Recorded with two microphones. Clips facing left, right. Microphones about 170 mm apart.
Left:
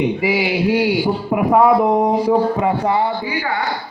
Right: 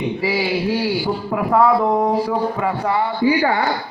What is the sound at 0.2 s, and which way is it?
Speech, 15° left (ahead or behind).